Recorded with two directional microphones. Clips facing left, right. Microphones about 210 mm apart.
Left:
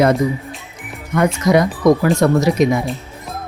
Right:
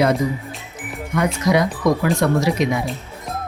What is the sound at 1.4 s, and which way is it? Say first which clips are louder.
Speech: left 4 dB; 45° left (ahead or behind).